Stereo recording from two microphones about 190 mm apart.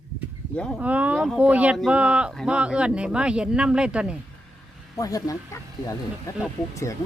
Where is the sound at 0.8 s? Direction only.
5° right (ahead or behind).